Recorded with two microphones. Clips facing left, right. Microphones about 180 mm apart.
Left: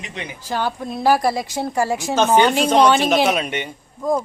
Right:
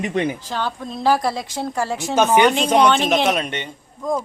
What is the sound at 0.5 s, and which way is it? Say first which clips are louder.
A woman's voice: left 2 dB; 10° left (ahead or behind).